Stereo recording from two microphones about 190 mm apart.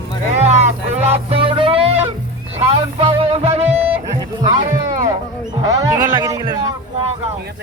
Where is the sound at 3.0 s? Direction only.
30° right (ahead or behind).